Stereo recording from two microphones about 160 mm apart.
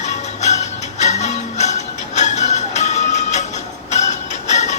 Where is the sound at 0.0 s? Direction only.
45° left (ahead or behind).